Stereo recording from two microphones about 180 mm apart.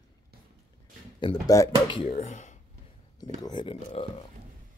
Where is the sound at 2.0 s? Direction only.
40° left (ahead or behind).